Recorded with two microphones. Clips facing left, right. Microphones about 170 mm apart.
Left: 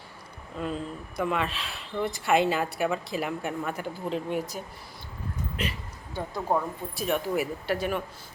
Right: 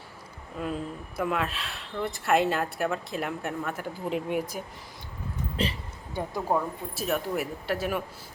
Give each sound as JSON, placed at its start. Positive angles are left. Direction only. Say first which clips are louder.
{"t": 0.5, "sound": "speech", "louder": "even", "side_deg": -5}
{"t": 5.6, "sound": "speech", "louder": "right 4 dB", "side_deg": -30}
{"t": 6.2, "sound": "speech", "louder": "right 1 dB", "side_deg": -20}
{"t": 6.5, "sound": "speech", "louder": "left 1 dB", "side_deg": 0}